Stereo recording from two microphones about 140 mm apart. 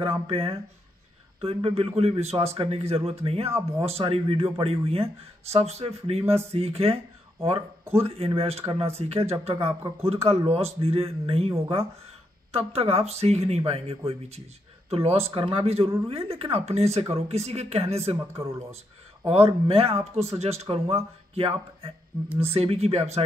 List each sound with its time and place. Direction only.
0.0 s speech: 45° right (ahead or behind)